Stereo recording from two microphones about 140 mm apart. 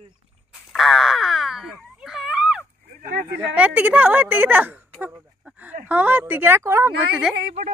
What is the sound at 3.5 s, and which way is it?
A woman's voice, 10° right (ahead or behind).